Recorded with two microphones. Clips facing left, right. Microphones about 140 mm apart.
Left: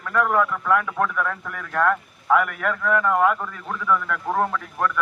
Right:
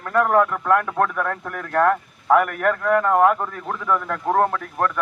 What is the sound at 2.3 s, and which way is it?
A man's voice, 45° right (ahead or behind).